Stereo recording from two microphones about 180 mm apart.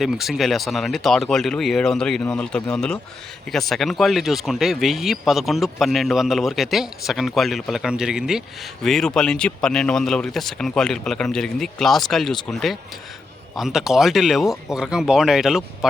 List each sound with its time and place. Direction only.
0.0 s speech: centre (ahead or behind)